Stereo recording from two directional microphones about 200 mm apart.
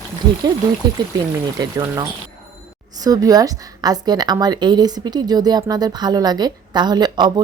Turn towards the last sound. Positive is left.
turn(degrees=-20)  # may be behind; listen again after turning